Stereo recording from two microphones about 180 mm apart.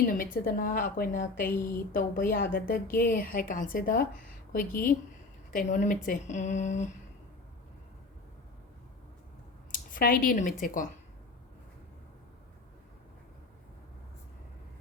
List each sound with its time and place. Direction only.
0.0 s a woman's voice: 50° left (ahead or behind)
9.9 s a woman's voice: 50° left (ahead or behind)